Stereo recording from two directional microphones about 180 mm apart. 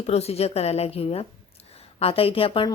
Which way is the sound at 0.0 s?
35° left (ahead or behind).